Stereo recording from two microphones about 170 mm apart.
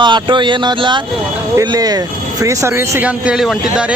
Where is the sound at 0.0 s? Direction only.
30° right (ahead or behind).